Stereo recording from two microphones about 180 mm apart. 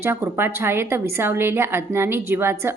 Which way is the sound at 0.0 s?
15° right (ahead or behind).